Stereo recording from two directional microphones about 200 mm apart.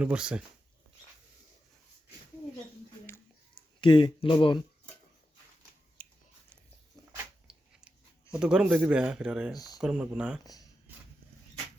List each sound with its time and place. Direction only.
0.0 s speech: 5° right (ahead or behind)
3.8 s speech: 20° left (ahead or behind)
6.0 s a sound: 45° left (ahead or behind)
7.4 s chewing: 5° right (ahead or behind)
9.7 s speech: 5° right (ahead or behind)